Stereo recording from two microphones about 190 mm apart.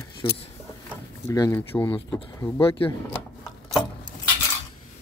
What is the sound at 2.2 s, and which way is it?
Speech, 25° left (ahead or behind).